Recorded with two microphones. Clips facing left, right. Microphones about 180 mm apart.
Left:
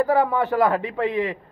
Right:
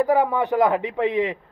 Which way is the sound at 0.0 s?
15° right (ahead or behind).